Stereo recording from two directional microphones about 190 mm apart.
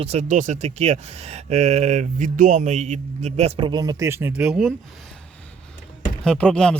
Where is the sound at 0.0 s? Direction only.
35° right (ahead or behind); by 4.7 s 5° right (ahead or behind).